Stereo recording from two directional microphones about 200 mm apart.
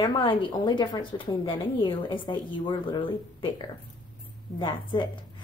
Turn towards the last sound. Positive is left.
turn(degrees=20)  # may be behind; listen again after turning